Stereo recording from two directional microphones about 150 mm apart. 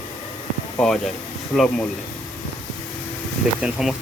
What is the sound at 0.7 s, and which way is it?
Speech, 5° left (ahead or behind).